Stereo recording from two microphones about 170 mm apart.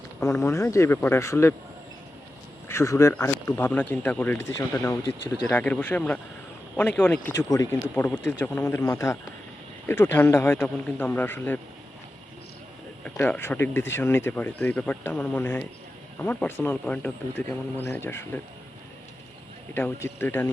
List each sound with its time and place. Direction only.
0.2 s speech: 20° left (ahead or behind)
2.6 s speech: 15° left (ahead or behind)
13.1 s speech: 10° left (ahead or behind)
19.7 s speech: 15° left (ahead or behind)